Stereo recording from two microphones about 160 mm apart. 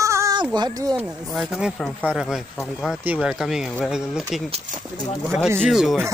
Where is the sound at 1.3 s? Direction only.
5° right (ahead or behind).